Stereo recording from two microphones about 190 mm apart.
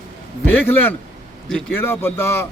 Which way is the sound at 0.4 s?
10° left (ahead or behind).